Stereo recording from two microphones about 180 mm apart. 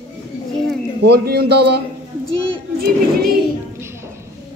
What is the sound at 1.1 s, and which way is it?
Speech, 65° right (ahead or behind).